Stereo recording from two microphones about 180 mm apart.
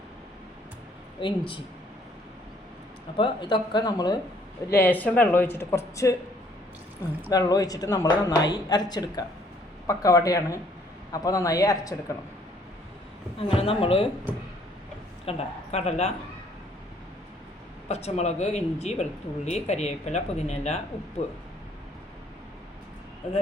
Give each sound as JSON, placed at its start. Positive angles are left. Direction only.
{"t": 1.2, "sound": "speech", "side_deg": 25}
{"t": 3.2, "sound": "speech", "side_deg": 25}
{"t": 4.7, "sound": "speech", "side_deg": 10}
{"t": 7.3, "sound": "speech", "side_deg": 20}
{"t": 13.5, "sound": "speech", "side_deg": 30}
{"t": 15.3, "sound": "speech", "side_deg": 35}
{"t": 17.8, "sound": "speech", "side_deg": 35}